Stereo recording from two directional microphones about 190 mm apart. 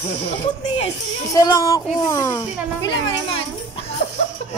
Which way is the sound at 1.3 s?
20° left (ahead or behind).